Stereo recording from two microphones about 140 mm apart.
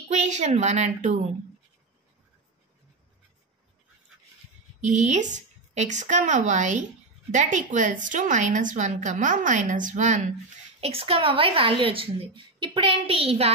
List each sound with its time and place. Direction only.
0.1 s a woman's voice: 55° right (ahead or behind)
4.8 s a woman's voice: 55° right (ahead or behind)
10.8 s a woman's voice: 45° right (ahead or behind)